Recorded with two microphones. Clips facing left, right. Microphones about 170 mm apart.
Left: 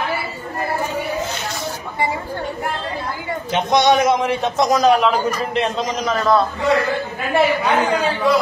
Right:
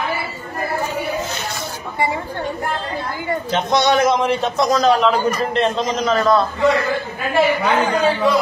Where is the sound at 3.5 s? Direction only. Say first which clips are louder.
Left 2 dB; 15° left (ahead or behind).